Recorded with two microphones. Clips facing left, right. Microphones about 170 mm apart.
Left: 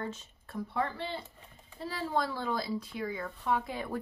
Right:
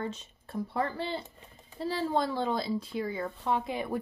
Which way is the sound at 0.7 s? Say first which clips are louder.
Right 2 dB; 35° right (ahead or behind).